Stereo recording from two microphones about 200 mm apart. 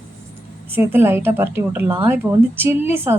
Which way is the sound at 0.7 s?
10° right (ahead or behind).